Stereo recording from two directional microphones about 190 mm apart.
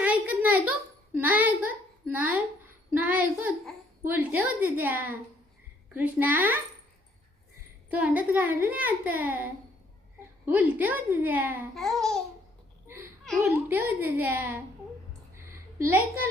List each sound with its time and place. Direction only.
0.0 s a sound: 10° right (ahead or behind)
1.2 s a child's voice: 10° right (ahead or behind)
7.9 s a child's voice: 5° right (ahead or behind)
11.7 s babbling: centre (ahead or behind)
13.4 s a child's voice: 10° right (ahead or behind)
15.4 s a sound: 15° right (ahead or behind)